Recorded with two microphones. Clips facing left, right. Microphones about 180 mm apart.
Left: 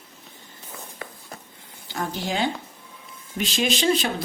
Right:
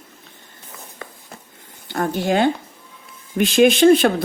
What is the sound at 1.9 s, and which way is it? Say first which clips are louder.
Speech: right 8 dB; 55° right (ahead or behind).